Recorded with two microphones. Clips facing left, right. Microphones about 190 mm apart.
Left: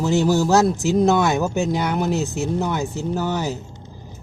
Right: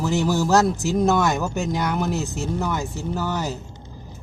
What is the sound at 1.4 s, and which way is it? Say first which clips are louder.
Speech: left 3 dB; 15° left (ahead or behind).